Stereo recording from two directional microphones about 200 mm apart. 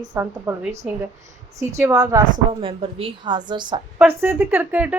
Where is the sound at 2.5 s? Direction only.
25° right (ahead or behind).